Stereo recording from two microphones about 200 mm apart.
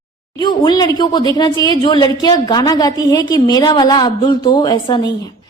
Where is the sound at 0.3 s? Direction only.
20° left (ahead or behind).